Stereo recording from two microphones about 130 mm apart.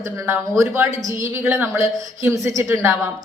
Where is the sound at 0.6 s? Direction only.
20° right (ahead or behind).